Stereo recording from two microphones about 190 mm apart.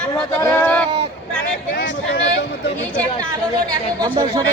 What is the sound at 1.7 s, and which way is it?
Speech, 65° left (ahead or behind).